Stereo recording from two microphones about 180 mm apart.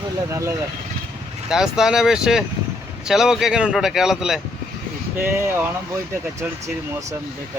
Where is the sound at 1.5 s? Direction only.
5° right (ahead or behind).